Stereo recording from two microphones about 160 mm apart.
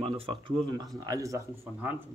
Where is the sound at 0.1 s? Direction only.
35° right (ahead or behind).